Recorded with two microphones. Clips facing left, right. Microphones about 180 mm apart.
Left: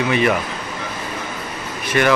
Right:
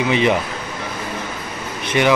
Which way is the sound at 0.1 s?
20° right (ahead or behind).